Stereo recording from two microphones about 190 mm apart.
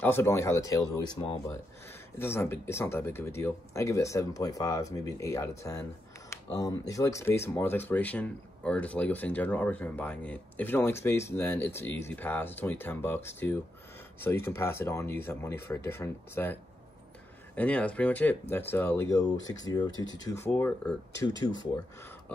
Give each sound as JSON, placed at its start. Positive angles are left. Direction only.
{"t": 0.0, "sound": "speech", "side_deg": 10}
{"t": 2.1, "sound": "speech", "side_deg": 10}
{"t": 17.6, "sound": "speech", "side_deg": 5}